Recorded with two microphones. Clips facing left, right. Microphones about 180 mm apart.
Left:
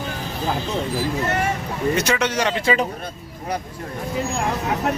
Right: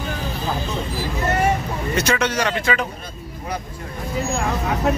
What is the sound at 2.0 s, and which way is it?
Speech, 15° left (ahead or behind).